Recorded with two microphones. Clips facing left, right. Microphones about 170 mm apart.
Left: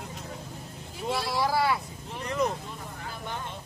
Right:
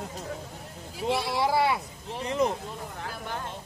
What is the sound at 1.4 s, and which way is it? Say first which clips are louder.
Speech: even; 25° right (ahead or behind).